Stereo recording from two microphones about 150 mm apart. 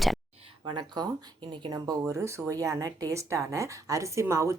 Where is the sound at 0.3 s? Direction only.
35° right (ahead or behind).